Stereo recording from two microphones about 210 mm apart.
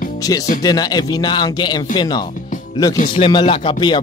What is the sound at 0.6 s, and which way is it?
Speech, 20° left (ahead or behind).